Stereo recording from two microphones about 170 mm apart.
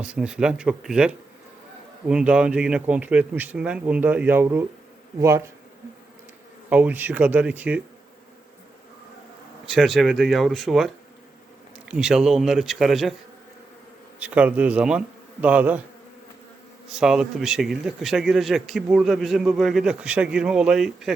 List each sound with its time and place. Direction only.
0.0 s a man's voice: 5° right (ahead or behind)
6.7 s a man's voice: 10° right (ahead or behind)
9.6 s a man's voice: centre (ahead or behind)
14.2 s a man's voice: 10° right (ahead or behind)
16.9 s a man's voice: 5° right (ahead or behind)